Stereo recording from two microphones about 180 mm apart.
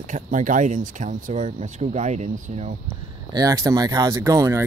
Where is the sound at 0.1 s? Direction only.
45° right (ahead or behind).